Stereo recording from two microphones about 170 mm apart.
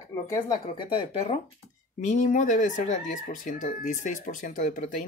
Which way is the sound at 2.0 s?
50° left (ahead or behind).